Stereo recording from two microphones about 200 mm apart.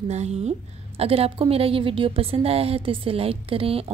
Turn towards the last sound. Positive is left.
turn(degrees=-30)  # may be behind; listen again after turning